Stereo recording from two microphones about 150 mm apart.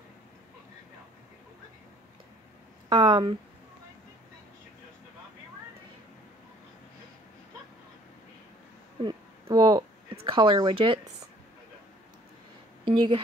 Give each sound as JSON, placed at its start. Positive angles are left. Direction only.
{"t": 2.9, "sound": "speech", "side_deg": -30}
{"t": 9.0, "sound": "a sound", "side_deg": -30}
{"t": 12.8, "sound": "a woman's voice", "side_deg": -35}